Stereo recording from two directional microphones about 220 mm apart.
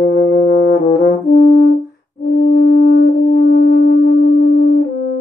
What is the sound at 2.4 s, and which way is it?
Music, 45° left (ahead or behind).